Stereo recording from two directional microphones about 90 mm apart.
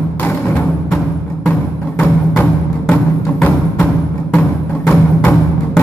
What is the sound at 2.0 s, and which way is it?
Music, 20° left (ahead or behind).